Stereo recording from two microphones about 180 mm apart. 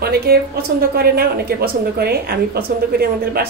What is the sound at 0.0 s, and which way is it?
A woman's voice, 60° right (ahead or behind).